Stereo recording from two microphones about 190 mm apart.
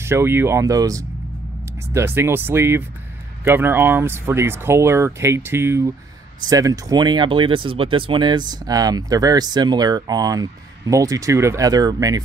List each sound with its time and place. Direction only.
0.0 s speech: 15° right (ahead or behind)